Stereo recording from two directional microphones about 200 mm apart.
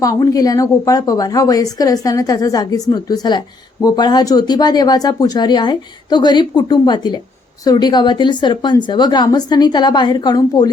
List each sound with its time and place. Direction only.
0.0 s a woman's voice: 15° left (ahead or behind)